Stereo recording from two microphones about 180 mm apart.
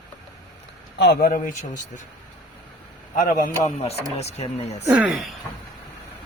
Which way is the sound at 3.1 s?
45° left (ahead or behind).